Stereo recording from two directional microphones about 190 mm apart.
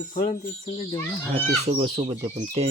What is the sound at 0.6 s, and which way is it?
Speech, 25° left (ahead or behind).